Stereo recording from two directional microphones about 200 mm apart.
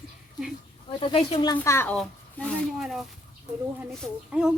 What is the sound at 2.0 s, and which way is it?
Speech, centre (ahead or behind).